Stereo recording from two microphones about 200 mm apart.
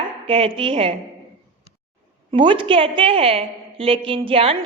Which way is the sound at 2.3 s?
25° right (ahead or behind).